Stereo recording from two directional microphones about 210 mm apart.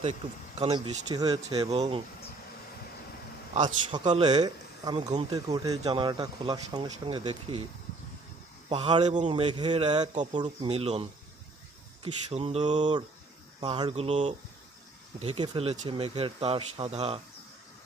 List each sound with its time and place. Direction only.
0.6 s speech: 30° right (ahead or behind)
1.4 s speech: 30° right (ahead or behind)
3.5 s speech: 20° right (ahead or behind)
8.7 s speech: 25° right (ahead or behind)
13.6 s speech: 20° right (ahead or behind)